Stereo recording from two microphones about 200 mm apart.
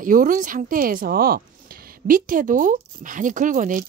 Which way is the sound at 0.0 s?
40° right (ahead or behind).